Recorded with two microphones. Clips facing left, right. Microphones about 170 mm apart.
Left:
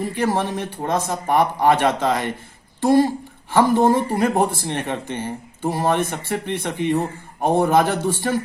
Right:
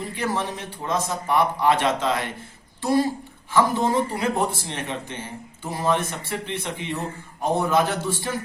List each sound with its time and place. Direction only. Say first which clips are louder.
0.0 s speech: left 5 dB; 55° left (ahead or behind)